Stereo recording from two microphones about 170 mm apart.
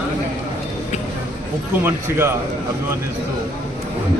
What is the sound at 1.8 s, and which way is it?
Speech, 15° right (ahead or behind).